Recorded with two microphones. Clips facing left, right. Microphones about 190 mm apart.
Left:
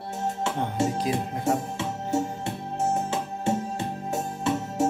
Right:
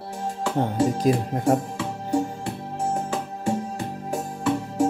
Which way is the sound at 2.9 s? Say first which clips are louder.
Even; 25° left (ahead or behind).